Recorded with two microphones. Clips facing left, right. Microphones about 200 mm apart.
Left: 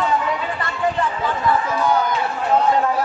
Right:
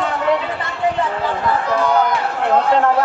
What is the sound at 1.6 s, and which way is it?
Speech, 70° right (ahead or behind).